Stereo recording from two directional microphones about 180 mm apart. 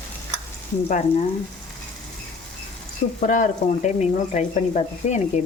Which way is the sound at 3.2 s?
45° left (ahead or behind).